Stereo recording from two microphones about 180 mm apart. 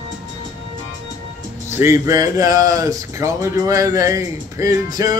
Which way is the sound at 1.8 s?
15° right (ahead or behind).